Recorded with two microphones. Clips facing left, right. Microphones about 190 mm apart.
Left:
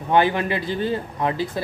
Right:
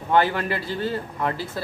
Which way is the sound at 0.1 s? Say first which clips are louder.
Left 2 dB; 15° left (ahead or behind).